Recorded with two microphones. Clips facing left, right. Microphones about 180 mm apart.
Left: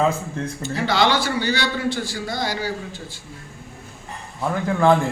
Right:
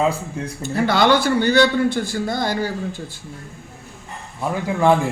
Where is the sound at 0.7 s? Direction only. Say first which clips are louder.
Right 4 dB; 55° right (ahead or behind).